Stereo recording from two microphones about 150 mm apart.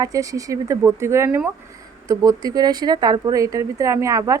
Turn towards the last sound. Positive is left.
turn(degrees=-20)  # may be behind; listen again after turning